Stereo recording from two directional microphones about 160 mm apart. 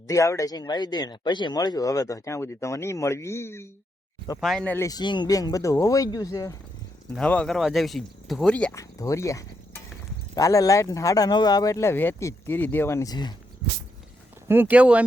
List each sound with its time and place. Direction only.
0.1 s speech: 20° left (ahead or behind)
4.4 s speech: centre (ahead or behind)
4.9 s speech: 25° left (ahead or behind)
7.1 s speech: 5° left (ahead or behind)
8.7 s speech: 20° left (ahead or behind)
14.4 s speech: 10° right (ahead or behind)